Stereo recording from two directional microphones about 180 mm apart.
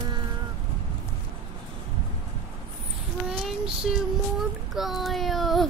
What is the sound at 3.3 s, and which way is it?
Child singing, 5° right (ahead or behind).